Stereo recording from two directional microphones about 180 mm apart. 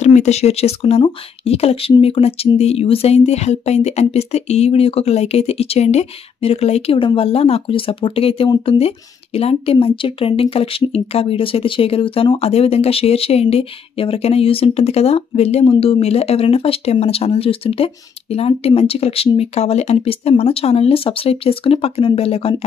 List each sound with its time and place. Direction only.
0.0 s speech: 40° left (ahead or behind)